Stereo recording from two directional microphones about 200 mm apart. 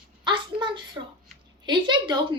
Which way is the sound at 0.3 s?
25° right (ahead or behind).